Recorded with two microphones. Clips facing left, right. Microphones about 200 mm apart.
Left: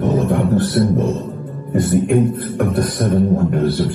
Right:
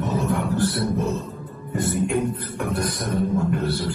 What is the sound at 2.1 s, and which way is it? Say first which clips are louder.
Music: left 8 dB; 55° left (ahead or behind).